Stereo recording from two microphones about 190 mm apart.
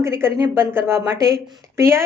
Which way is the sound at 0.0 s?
15° right (ahead or behind).